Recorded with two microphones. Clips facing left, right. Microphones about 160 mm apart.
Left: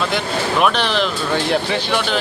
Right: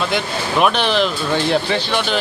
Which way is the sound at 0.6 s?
5° right (ahead or behind).